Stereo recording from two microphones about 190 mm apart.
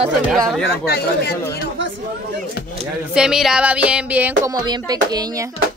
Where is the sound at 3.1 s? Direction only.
5° right (ahead or behind).